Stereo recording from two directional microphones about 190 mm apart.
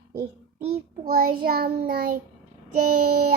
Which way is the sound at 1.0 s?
50° right (ahead or behind).